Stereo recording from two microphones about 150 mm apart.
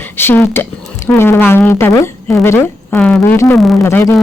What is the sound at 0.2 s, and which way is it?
A woman's voice, 15° left (ahead or behind).